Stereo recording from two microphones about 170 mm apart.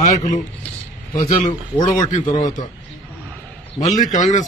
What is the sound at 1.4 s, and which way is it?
A man's voice, 45° left (ahead or behind).